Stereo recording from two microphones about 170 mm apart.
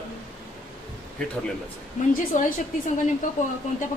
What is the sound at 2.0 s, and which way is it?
Speech, 45° left (ahead or behind).